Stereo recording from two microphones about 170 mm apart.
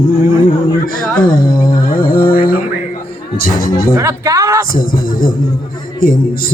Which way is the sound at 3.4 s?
55° left (ahead or behind).